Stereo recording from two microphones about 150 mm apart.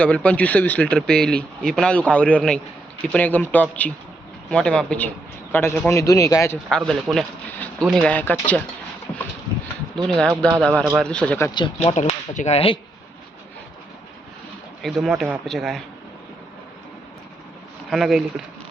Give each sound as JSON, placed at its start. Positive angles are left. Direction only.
{"t": 0.0, "sound": "a man's voice", "side_deg": 10}
{"t": 6.7, "sound": "speech", "side_deg": 5}
{"t": 10.1, "sound": "speech", "side_deg": 5}
{"t": 11.1, "sound": "speech", "side_deg": 10}
{"t": 11.5, "sound": "speech", "side_deg": 35}
{"t": 14.8, "sound": "speech", "side_deg": 0}
{"t": 17.9, "sound": "speech", "side_deg": 0}